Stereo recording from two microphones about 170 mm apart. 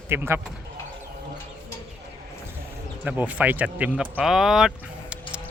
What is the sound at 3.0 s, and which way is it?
Speech, 10° right (ahead or behind).